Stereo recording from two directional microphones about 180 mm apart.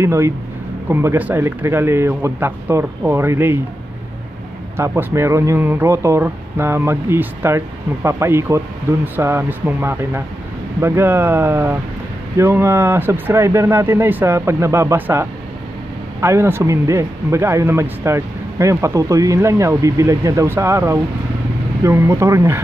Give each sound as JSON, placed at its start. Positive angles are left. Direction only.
{"t": 0.0, "sound": "speech", "side_deg": -15}
{"t": 4.7, "sound": "speech", "side_deg": -15}